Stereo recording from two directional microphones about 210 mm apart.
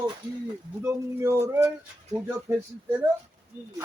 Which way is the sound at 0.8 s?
10° right (ahead or behind).